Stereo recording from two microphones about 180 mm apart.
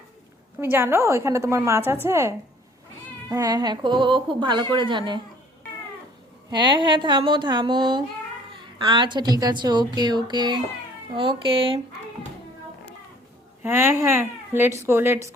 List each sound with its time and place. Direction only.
0.6 s a woman's voice: 15° right (ahead or behind)
6.5 s a woman's voice: 25° right (ahead or behind)
13.6 s speech: 10° right (ahead or behind)